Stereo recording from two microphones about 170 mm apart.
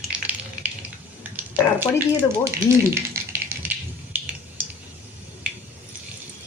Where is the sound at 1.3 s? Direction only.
10° right (ahead or behind).